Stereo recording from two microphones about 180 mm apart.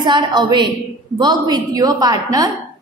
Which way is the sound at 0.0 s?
25° right (ahead or behind).